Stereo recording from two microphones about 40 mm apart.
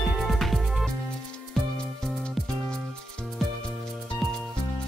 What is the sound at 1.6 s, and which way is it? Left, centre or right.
Music, centre.